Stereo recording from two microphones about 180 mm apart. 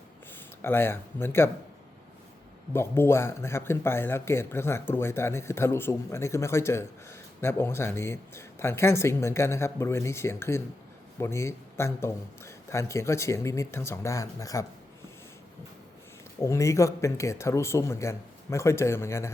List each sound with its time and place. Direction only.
0.3 s speech: 10° left (ahead or behind)
2.7 s speech: 15° left (ahead or behind)
16.4 s speech: 15° left (ahead or behind)